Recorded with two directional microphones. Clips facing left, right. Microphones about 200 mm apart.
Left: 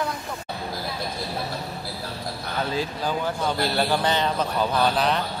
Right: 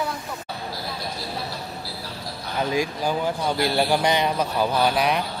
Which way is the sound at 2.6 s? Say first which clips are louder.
Right 4 dB; 15° right (ahead or behind).